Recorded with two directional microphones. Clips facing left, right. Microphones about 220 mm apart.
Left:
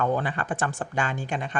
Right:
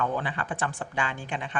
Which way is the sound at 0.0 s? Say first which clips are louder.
Left 4 dB; 45° left (ahead or behind).